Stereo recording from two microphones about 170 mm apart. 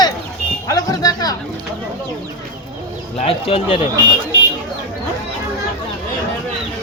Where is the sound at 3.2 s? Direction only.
35° left (ahead or behind).